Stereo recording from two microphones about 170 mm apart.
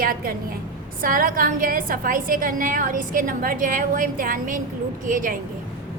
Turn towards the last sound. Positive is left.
turn(degrees=-55)  # may be behind; listen again after turning